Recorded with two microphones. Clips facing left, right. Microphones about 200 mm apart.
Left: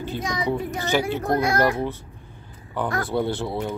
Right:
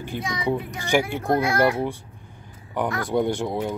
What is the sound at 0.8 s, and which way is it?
Speech, 15° right (ahead or behind).